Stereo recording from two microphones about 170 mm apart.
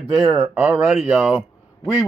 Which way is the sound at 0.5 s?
10° right (ahead or behind).